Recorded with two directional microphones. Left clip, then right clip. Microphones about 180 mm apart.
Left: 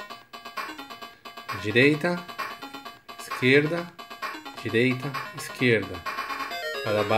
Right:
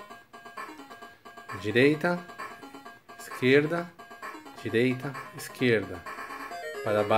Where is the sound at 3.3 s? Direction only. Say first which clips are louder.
Left 2 dB; 10° right (ahead or behind).